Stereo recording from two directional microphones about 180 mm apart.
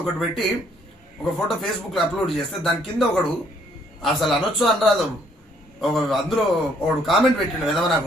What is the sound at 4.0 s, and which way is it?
Speech, centre (ahead or behind).